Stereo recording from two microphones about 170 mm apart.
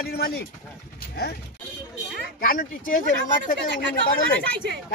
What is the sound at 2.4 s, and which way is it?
Speech, 55° left (ahead or behind).